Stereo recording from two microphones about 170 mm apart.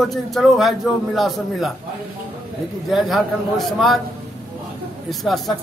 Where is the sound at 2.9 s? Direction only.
Centre (ahead or behind).